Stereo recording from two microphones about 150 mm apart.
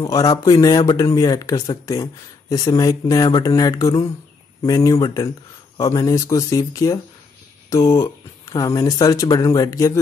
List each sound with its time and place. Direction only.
0.0 s speech: 25° left (ahead or behind)